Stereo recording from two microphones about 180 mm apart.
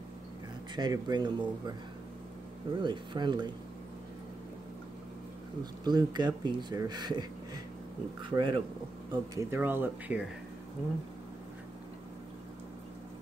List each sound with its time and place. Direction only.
0.7 s speech: 25° right (ahead or behind)
2.8 s speech: 25° right (ahead or behind)
5.9 s speech: 25° right (ahead or behind)